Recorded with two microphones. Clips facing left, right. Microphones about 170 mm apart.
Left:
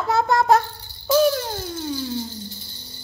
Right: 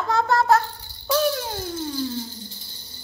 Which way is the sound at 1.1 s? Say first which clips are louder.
Left 4 dB; centre (ahead or behind).